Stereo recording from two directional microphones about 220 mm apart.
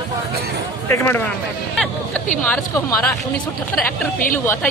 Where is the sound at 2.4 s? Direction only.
10° left (ahead or behind).